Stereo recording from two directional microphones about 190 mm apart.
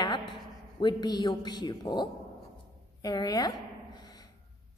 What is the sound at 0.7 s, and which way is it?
A woman's voice, 20° left (ahead or behind).